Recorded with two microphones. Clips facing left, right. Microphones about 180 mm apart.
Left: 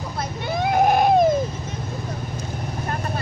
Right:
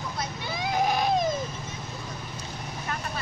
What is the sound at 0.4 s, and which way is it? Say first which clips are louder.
Goat: left 8 dB; 55° left (ahead or behind).